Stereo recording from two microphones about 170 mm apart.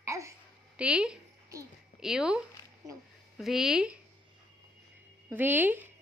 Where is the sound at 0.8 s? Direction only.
5° right (ahead or behind).